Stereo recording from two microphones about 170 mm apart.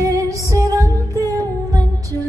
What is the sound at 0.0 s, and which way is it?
Music, 20° right (ahead or behind).